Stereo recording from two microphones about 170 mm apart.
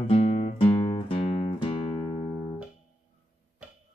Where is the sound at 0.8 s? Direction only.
30° left (ahead or behind).